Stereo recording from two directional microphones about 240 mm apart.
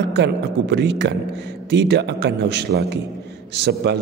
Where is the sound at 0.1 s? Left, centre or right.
Right.